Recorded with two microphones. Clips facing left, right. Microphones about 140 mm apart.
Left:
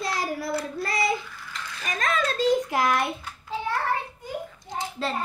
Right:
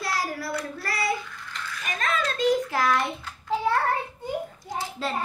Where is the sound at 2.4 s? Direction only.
20° left (ahead or behind).